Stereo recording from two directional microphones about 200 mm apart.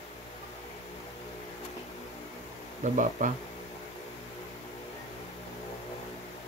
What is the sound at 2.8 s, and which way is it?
Speech, 40° right (ahead or behind).